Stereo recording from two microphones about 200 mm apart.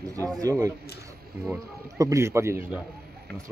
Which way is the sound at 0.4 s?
15° right (ahead or behind).